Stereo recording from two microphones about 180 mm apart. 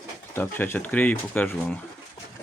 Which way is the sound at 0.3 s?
10° left (ahead or behind).